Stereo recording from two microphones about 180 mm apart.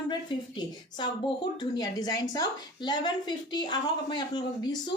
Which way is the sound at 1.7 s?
20° left (ahead or behind).